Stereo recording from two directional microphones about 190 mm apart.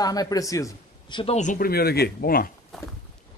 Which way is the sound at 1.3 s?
45° left (ahead or behind).